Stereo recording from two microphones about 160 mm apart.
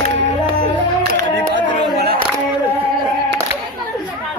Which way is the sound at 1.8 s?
90° right.